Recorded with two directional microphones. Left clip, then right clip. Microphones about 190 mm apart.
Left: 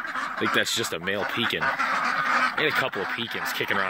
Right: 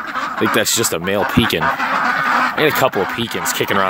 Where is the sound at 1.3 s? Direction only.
20° right (ahead or behind).